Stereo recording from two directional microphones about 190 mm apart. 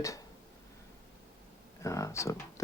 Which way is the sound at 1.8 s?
15° left (ahead or behind).